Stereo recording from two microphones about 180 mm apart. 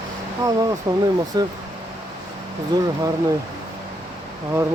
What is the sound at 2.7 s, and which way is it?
Speech, 25° right (ahead or behind).